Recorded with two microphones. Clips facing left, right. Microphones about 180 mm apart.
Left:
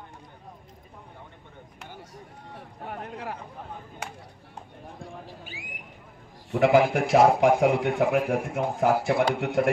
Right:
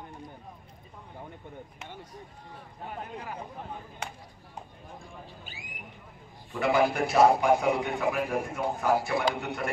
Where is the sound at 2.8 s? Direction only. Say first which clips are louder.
Left 3 dB; 70° left (ahead or behind).